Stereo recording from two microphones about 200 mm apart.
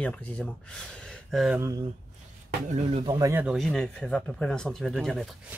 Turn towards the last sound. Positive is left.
turn(degrees=0)  # may be behind; listen again after turning